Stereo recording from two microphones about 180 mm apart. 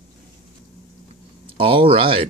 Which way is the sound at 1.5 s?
30° right (ahead or behind).